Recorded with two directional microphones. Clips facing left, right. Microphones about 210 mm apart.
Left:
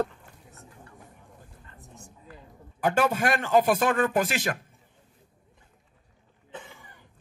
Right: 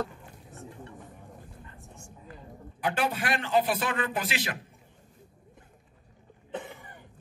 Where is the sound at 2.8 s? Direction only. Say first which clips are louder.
Left 5 dB; 45° left (ahead or behind).